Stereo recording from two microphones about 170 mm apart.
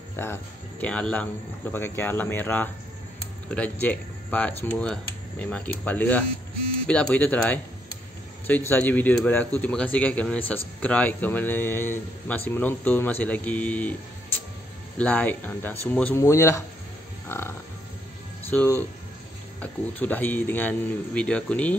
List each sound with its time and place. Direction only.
0.1 s speech: 15° left (ahead or behind)
15.0 s speech: 5° left (ahead or behind)